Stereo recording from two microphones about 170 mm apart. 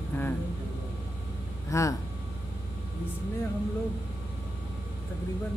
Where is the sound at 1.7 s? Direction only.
15° left (ahead or behind).